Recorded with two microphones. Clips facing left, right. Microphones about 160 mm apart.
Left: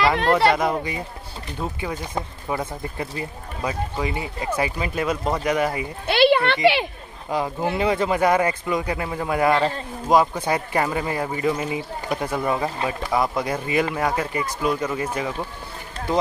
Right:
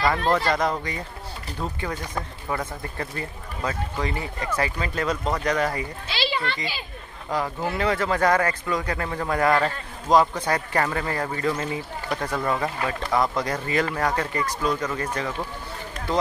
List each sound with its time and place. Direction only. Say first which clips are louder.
0.6 s speech: left 2 dB; 10° left (ahead or behind)
6.0 s speech: left 13 dB; 60° left (ahead or behind)
7.2 s speech: left 3 dB; 20° left (ahead or behind)